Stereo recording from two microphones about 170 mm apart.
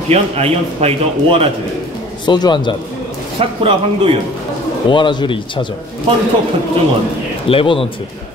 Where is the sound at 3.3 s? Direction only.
35° right (ahead or behind).